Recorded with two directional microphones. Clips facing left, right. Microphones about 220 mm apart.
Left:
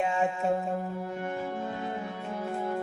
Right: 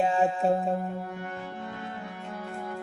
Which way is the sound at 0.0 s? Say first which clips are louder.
Right 3 dB; 35° right (ahead or behind).